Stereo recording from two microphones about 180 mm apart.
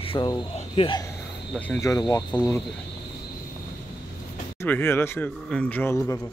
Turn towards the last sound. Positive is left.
turn(degrees=10)  # may be behind; listen again after turning